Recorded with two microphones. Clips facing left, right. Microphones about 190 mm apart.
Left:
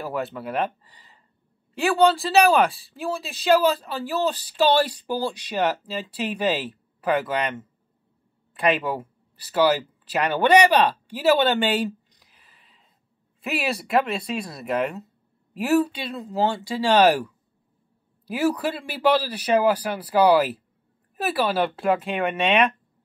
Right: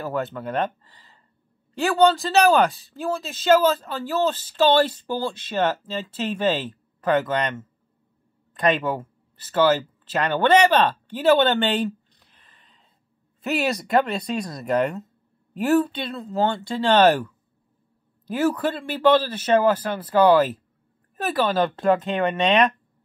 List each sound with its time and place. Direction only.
0.0 s speech: 10° left (ahead or behind)
12.3 s a sound: 5° left (ahead or behind)
13.4 s speech: 5° left (ahead or behind)